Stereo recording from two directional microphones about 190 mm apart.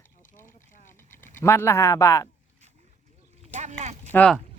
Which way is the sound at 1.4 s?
15° left (ahead or behind).